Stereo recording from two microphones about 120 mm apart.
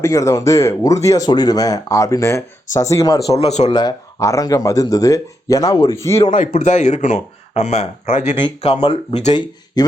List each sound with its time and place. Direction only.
0.0 s speech: 25° left (ahead or behind)
3.3 s speech: 60° left (ahead or behind)
3.7 s speech: 40° left (ahead or behind)
4.2 s speech: 25° left (ahead or behind)
6.1 s speech: 80° left
8.6 s speech: 45° left (ahead or behind)